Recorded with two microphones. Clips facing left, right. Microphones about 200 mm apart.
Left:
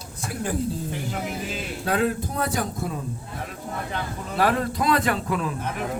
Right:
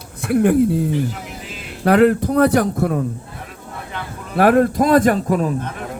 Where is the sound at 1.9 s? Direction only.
70° right (ahead or behind).